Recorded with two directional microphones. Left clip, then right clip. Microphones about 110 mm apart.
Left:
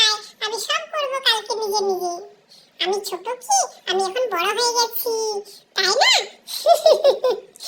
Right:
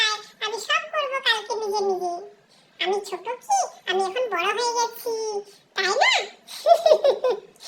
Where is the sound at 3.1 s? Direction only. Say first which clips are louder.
Left 3 dB; 30° left (ahead or behind).